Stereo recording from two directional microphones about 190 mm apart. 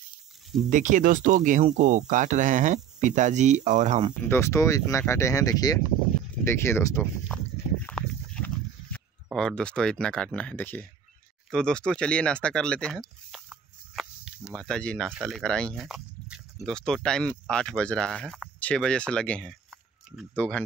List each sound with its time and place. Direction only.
0.7 s speech: 40° right (ahead or behind)
4.3 s speech: 15° left (ahead or behind)
7.3 s a sound: centre (ahead or behind)
8.9 s speech: centre (ahead or behind)